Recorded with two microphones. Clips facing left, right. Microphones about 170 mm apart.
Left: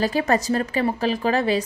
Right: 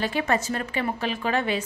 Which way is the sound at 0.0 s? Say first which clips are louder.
Left 4 dB; 40° left (ahead or behind).